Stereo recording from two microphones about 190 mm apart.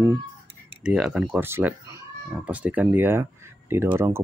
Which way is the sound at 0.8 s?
5° right (ahead or behind).